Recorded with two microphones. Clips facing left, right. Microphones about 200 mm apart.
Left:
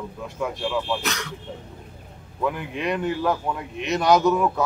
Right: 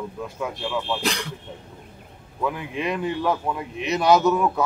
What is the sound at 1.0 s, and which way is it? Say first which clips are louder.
Speech: right 3 dB; 30° right (ahead or behind).